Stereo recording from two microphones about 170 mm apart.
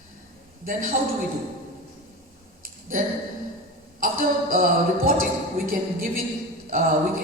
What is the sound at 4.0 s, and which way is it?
Speech, 55° right (ahead or behind).